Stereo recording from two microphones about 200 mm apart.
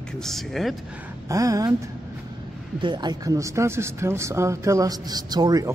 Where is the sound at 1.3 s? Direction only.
15° right (ahead or behind).